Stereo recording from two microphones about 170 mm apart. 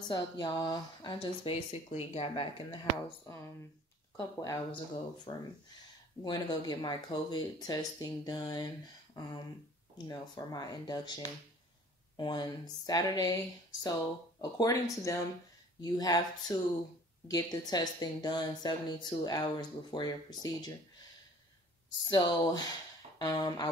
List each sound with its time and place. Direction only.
0.0 s a woman's voice: 25° left (ahead or behind)
3.3 s a woman's voice: 15° left (ahead or behind)
12.2 s a woman's voice: 25° left (ahead or behind)
14.4 s a woman's voice: 20° left (ahead or behind)
21.9 s a woman's voice: 25° left (ahead or behind)